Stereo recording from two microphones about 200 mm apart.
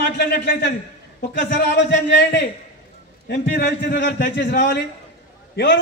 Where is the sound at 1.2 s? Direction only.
60° left (ahead or behind).